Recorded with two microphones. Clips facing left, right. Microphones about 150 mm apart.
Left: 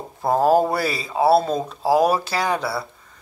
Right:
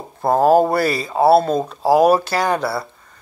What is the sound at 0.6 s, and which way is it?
Speech, 50° right (ahead or behind).